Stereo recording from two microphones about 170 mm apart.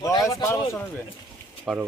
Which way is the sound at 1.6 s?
10° right (ahead or behind).